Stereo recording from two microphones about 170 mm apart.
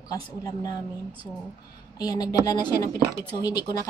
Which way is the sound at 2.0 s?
20° left (ahead or behind).